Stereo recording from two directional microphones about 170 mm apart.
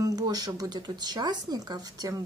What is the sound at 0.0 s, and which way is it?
Speech, 20° right (ahead or behind).